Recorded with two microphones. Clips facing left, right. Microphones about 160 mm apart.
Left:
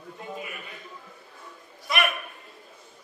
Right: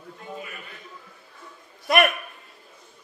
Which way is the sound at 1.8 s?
55° right (ahead or behind).